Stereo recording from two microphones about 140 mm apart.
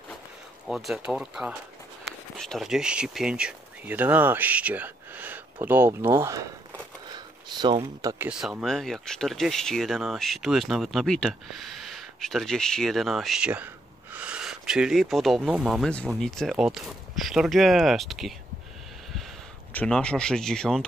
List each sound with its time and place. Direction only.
0.7 s speech: centre (ahead or behind); by 6.4 s 20° right (ahead or behind)
8.0 s speech: 25° right (ahead or behind)
8.3 s speech: 5° right (ahead or behind)
19.7 s speech: 10° left (ahead or behind)